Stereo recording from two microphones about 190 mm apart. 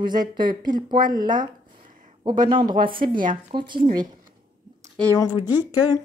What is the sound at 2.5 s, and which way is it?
Speech, 25° right (ahead or behind).